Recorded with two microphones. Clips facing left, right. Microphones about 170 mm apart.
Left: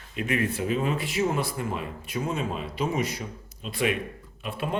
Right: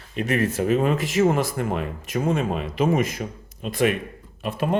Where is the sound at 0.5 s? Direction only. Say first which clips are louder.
Right 6 dB; 50° right (ahead or behind).